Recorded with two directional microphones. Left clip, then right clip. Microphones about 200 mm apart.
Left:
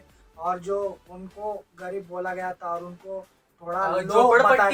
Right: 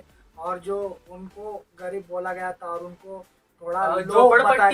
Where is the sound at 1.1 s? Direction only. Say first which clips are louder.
Left 3 dB; centre (ahead or behind).